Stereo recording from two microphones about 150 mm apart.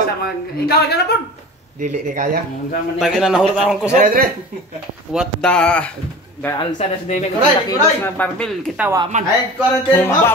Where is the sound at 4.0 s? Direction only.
70° right (ahead or behind).